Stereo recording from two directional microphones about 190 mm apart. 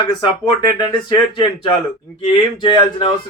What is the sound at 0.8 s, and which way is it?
Speech, 25° left (ahead or behind).